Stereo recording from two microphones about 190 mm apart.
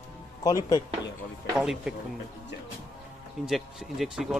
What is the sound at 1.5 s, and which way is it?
Speech, 5° right (ahead or behind).